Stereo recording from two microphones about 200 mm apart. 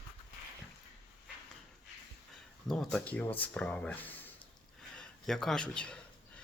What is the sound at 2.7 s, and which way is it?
Speech, 5° left (ahead or behind).